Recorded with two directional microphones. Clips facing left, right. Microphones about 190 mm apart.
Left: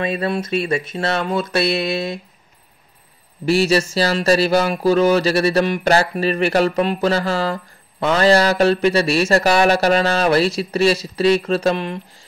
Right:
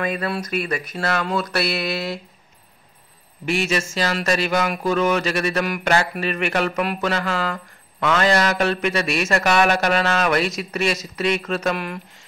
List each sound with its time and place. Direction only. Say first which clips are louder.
0.0 s speech: left 3 dB; 25° left (ahead or behind)
3.4 s speech: left 6 dB; 35° left (ahead or behind)